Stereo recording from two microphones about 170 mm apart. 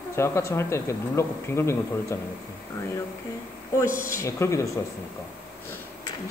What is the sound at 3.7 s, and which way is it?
Speech, 15° left (ahead or behind).